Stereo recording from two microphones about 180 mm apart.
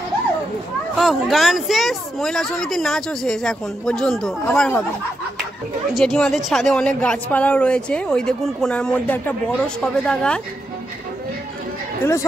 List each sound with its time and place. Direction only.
0.9 s speech: centre (ahead or behind)
5.9 s speech: 5° left (ahead or behind)
12.0 s speech: 15° left (ahead or behind)